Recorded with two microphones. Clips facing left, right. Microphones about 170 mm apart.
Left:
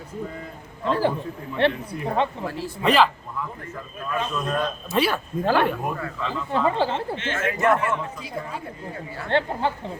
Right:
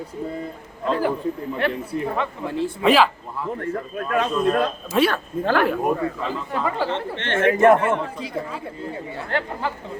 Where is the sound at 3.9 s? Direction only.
70° right (ahead or behind).